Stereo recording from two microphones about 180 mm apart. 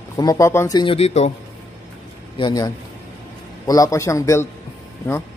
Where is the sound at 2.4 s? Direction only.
20° left (ahead or behind).